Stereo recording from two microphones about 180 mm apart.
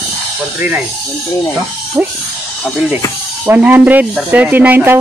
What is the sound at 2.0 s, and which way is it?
Speech, 5° right (ahead or behind).